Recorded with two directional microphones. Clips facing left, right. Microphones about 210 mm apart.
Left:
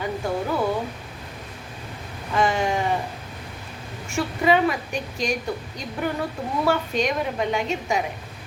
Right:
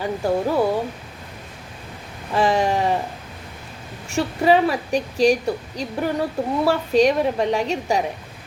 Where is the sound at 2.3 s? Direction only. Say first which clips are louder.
Right 3 dB; 35° right (ahead or behind).